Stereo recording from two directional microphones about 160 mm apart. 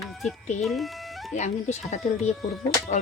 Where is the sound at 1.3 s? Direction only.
45° left (ahead or behind).